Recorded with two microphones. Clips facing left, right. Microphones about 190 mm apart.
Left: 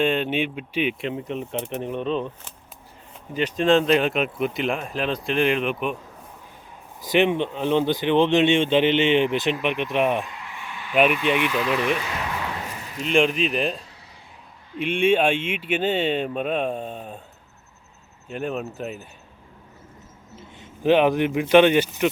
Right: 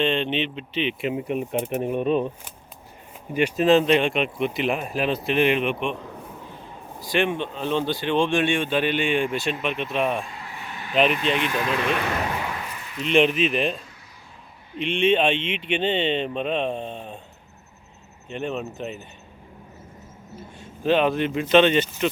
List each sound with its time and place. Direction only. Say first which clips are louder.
0.0 s speech: left 1 dB; 5° left (ahead or behind)
1.0 s speech: right 3 dB; 10° right (ahead or behind)
7.1 s speech: left 4 dB; 20° left (ahead or behind)
10.2 s a sound: even; 35° right (ahead or behind)
11.4 s speech: left 2 dB; 50° right (ahead or behind)
13.1 s speech: right 1 dB; centre (ahead or behind)
14.8 s speech: left 1 dB; 10° left (ahead or behind)
18.3 s speech: left 1 dB; 5° left (ahead or behind)
20.6 s speech: left 3 dB; 15° left (ahead or behind)